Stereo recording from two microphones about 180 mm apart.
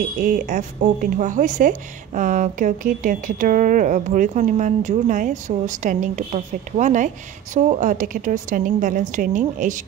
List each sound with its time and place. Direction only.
0.2 s speech: 45° right (ahead or behind)